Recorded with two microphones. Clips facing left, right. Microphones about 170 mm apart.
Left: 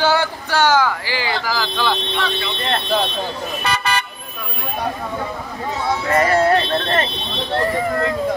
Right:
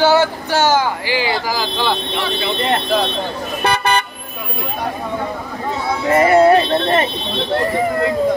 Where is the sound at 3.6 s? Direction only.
55° right (ahead or behind).